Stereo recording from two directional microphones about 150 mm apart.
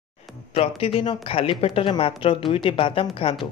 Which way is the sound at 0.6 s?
40° left (ahead or behind).